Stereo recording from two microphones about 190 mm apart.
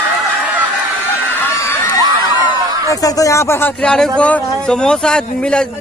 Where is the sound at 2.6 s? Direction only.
20° right (ahead or behind).